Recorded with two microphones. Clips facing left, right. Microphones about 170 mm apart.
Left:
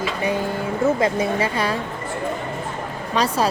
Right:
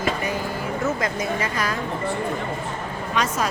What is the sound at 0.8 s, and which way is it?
Speech, 30° left (ahead or behind).